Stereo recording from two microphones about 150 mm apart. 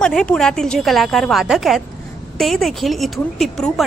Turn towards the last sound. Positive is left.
turn(degrees=0)  # may be behind; listen again after turning